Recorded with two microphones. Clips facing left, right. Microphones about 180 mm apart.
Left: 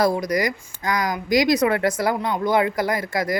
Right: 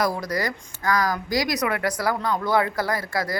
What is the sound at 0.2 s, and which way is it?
Speech, 15° left (ahead or behind).